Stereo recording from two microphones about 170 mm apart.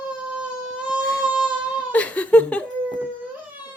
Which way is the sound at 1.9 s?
10° left (ahead or behind).